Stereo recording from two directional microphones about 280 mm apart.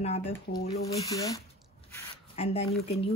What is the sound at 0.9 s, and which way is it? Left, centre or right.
Speech, centre.